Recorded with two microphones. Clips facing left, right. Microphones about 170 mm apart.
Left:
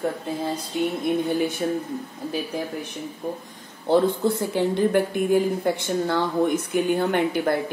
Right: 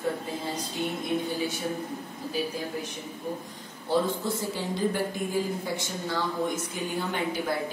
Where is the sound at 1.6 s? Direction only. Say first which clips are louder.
Left 7 dB; 55° left (ahead or behind).